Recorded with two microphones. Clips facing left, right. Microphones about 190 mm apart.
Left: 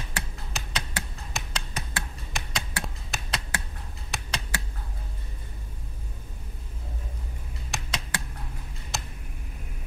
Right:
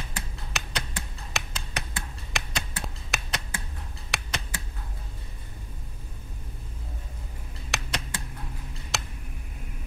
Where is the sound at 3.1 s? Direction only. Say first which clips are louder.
Right 3 dB; 70° right (ahead or behind).